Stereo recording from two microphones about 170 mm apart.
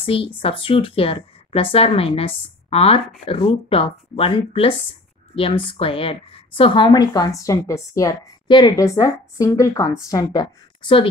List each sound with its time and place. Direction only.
0.0 s speech: 35° left (ahead or behind)